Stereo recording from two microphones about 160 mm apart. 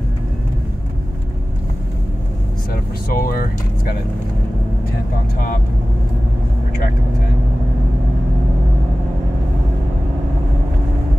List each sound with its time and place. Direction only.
2.7 s speech: 65° left (ahead or behind)